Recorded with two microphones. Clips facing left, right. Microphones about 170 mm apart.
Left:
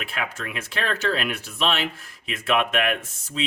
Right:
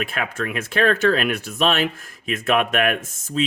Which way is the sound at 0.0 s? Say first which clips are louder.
Right 5 dB; 50° right (ahead or behind).